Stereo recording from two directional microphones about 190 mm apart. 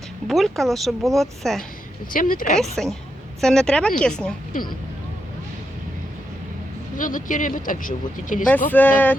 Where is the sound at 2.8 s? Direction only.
5° left (ahead or behind).